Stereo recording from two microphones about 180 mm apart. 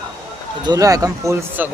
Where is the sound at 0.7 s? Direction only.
20° right (ahead or behind).